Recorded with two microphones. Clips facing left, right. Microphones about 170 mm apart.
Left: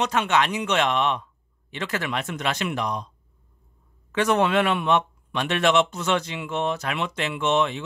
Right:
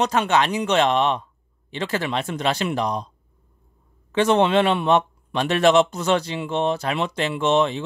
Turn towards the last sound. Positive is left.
turn(degrees=-35)  # may be behind; listen again after turning